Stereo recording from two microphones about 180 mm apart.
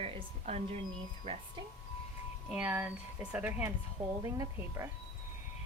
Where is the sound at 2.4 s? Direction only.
10° right (ahead or behind).